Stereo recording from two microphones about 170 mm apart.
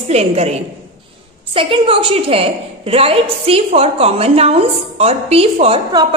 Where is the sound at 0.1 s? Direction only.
40° right (ahead or behind).